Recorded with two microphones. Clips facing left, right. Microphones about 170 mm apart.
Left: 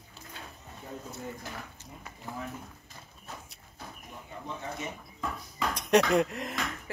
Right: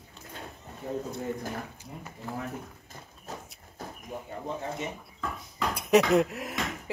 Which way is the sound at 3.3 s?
40° right (ahead or behind).